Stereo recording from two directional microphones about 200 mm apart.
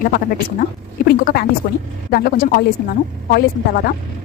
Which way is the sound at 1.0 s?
50° left (ahead or behind).